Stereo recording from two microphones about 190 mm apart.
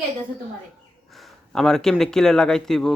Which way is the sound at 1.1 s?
Centre (ahead or behind).